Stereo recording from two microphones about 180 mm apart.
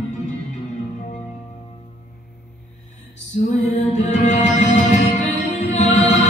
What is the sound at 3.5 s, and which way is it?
Music, 40° left (ahead or behind).